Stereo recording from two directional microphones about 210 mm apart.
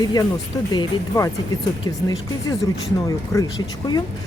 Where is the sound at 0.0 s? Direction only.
20° left (ahead or behind).